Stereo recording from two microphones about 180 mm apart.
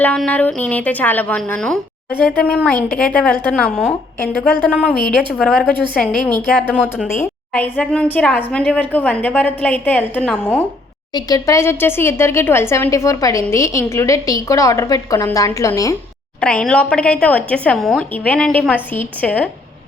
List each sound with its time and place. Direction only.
0.0 s a woman's voice: 5° left (ahead or behind)
4.9 s a woman's voice: centre (ahead or behind)
11.1 s speech: 20° left (ahead or behind)
16.4 s speech: 5° left (ahead or behind)